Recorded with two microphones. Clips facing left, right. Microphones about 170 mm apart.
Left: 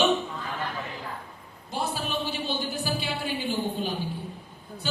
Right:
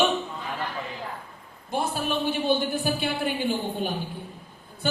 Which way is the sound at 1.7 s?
55° right (ahead or behind).